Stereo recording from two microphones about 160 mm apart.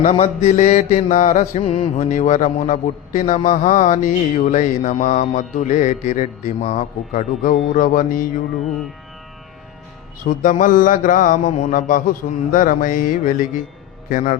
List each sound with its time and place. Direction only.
0.0 s mantra: 45° left (ahead or behind)
10.2 s mantra: 55° left (ahead or behind)